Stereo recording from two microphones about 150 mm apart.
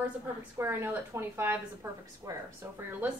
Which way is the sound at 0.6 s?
15° right (ahead or behind).